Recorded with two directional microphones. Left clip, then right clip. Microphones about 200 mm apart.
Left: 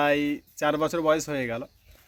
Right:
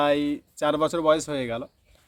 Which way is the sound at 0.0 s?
5° left (ahead or behind).